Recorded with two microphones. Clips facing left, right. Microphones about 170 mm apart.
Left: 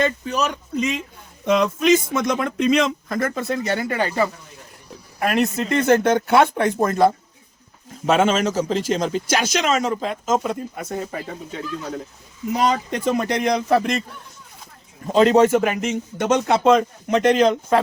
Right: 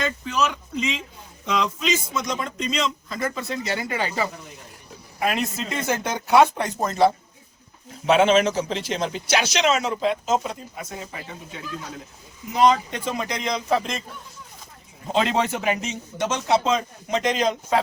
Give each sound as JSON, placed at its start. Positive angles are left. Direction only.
{"t": 0.0, "sound": "a man's voice", "side_deg": 35}
{"t": 1.5, "sound": "a man's voice", "side_deg": 55}
{"t": 15.1, "sound": "a man's voice", "side_deg": 40}